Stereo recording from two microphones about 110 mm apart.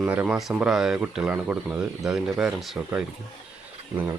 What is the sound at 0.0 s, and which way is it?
Speech, 10° right (ahead or behind).